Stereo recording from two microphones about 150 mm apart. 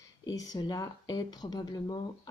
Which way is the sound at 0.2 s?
25° left (ahead or behind).